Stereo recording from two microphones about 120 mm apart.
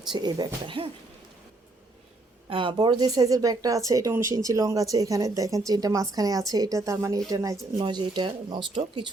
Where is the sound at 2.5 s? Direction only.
45° right (ahead or behind).